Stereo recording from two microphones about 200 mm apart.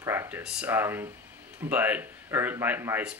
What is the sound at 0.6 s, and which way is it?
Speech, 10° right (ahead or behind).